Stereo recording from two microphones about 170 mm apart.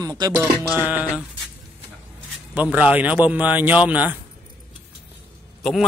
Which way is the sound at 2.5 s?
10° right (ahead or behind).